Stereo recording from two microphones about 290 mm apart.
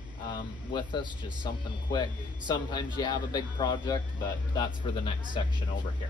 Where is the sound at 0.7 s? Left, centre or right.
Centre.